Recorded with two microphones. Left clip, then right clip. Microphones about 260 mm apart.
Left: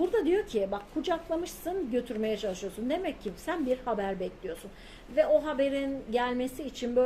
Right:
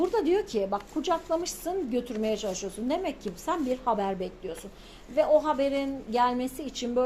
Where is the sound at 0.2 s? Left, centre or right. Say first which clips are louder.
Right 1 dB; centre.